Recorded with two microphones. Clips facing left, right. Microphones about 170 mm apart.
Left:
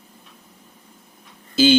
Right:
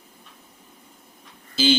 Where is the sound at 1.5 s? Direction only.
50° left (ahead or behind).